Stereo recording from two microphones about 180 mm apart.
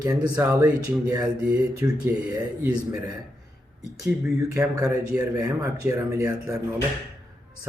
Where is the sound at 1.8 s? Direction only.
10° right (ahead or behind).